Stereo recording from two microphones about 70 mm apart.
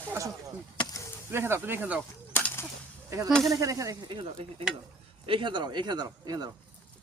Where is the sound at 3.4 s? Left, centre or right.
Right.